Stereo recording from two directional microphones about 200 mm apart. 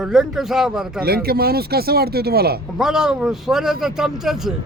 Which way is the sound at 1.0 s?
50° right (ahead or behind).